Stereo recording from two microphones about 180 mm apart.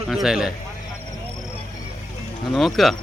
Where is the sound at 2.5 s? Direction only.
Centre (ahead or behind).